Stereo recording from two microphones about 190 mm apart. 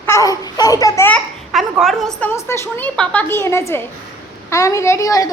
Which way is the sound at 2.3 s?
10° left (ahead or behind).